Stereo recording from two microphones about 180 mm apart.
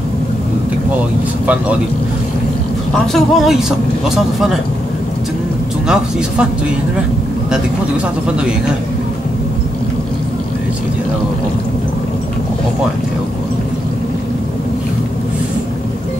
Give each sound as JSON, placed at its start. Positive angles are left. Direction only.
{"t": 3.1, "sound": "speech", "side_deg": 0}
{"t": 5.9, "sound": "speech", "side_deg": -5}